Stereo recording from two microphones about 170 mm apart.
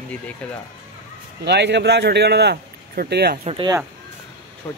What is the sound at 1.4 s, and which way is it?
A man's voice, 85° right.